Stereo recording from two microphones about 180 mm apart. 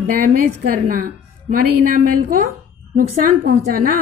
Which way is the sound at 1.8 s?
50° right (ahead or behind).